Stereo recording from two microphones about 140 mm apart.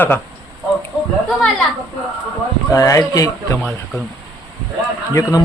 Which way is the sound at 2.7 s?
25° left (ahead or behind).